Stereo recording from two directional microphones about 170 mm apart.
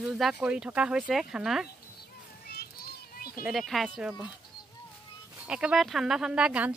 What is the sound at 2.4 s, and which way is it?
Children playing, 70° left (ahead or behind).